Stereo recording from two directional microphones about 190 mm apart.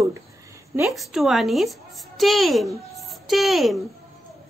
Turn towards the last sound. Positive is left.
turn(degrees=0)  # may be behind; listen again after turning